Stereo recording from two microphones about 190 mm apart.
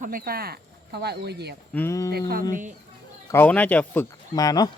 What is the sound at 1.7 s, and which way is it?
Speech, 15° left (ahead or behind).